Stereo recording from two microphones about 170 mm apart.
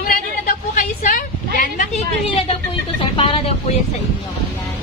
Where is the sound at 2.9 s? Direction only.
30° left (ahead or behind).